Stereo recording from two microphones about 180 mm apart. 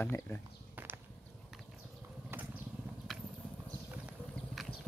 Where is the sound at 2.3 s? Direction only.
10° right (ahead or behind).